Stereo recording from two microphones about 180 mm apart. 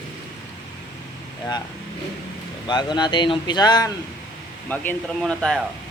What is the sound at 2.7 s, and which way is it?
Speech, 25° left (ahead or behind).